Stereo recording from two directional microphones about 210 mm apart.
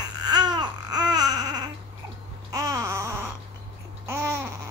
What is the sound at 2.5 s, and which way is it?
Babbling, 15° right (ahead or behind).